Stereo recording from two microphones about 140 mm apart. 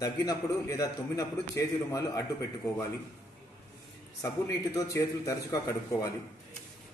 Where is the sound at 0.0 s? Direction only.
25° left (ahead or behind).